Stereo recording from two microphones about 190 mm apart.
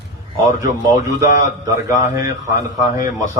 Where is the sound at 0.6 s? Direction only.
15° right (ahead or behind).